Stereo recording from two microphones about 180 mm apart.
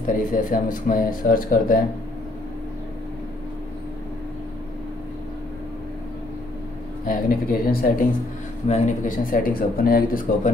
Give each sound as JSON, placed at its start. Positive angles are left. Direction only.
{"t": 0.0, "sound": "speech", "side_deg": 50}
{"t": 7.1, "sound": "speech", "side_deg": 55}
{"t": 8.6, "sound": "speech", "side_deg": 40}